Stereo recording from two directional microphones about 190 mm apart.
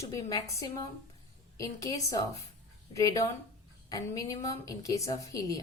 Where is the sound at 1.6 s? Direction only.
20° left (ahead or behind).